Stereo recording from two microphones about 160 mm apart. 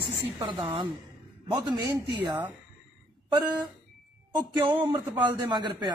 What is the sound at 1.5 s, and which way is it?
Speech, 30° right (ahead or behind).